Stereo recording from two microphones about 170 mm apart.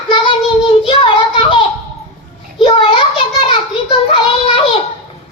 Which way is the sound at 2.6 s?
30° left (ahead or behind).